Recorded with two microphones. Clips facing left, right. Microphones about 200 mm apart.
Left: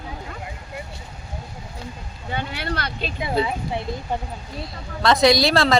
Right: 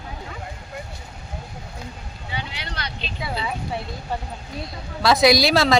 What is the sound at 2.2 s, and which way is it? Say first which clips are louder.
Vehicle: left 6 dB; 50° left (ahead or behind).